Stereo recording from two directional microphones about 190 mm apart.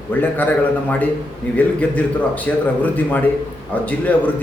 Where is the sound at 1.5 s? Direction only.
10° left (ahead or behind).